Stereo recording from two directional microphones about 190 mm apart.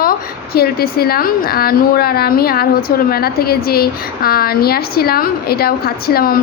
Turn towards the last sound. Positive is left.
turn(degrees=50)  # may be behind; listen again after turning